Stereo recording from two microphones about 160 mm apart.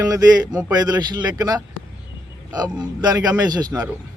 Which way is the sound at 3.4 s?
25° right (ahead or behind).